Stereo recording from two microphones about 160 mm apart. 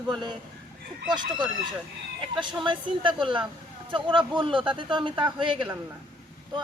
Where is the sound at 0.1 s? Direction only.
30° right (ahead or behind).